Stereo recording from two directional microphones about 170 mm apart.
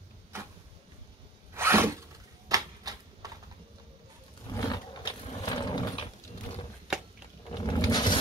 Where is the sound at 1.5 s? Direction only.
15° right (ahead or behind).